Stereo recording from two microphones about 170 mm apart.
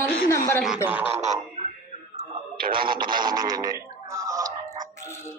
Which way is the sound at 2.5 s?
60° right (ahead or behind).